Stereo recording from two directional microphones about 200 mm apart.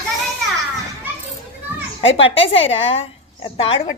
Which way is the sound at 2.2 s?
30° left (ahead or behind).